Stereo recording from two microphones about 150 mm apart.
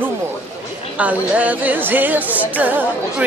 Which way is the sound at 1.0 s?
10° right (ahead or behind).